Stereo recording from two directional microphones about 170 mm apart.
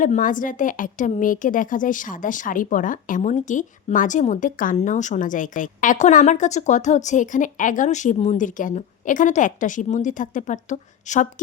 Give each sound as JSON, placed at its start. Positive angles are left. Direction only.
{"t": 0.0, "sound": "a woman's voice", "side_deg": 50}